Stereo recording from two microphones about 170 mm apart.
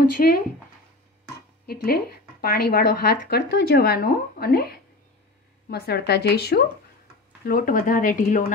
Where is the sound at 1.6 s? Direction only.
65° left (ahead or behind).